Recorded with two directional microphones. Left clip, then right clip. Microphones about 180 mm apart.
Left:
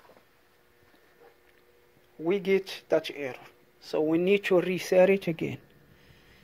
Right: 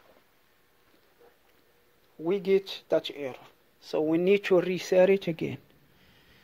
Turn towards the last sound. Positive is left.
turn(degrees=-20)  # may be behind; listen again after turning